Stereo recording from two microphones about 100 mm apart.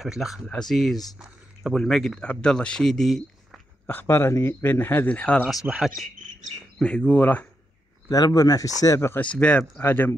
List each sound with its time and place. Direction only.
0.0 s speech: 5° right (ahead or behind)
3.8 s speech: 20° left (ahead or behind)
5.5 s speech: 5° right (ahead or behind)
6.8 s speech: 10° left (ahead or behind)
8.1 s speech: 35° left (ahead or behind)
9.2 s speech: 10° left (ahead or behind)